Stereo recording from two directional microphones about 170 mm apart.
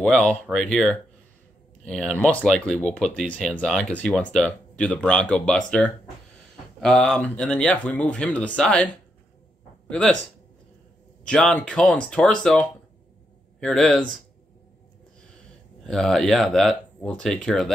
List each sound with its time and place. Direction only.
0.0 s speech: 5° left (ahead or behind)
9.8 s speech: 5° left (ahead or behind)
11.2 s speech: 5° left (ahead or behind)
15.8 s speech: 5° left (ahead or behind)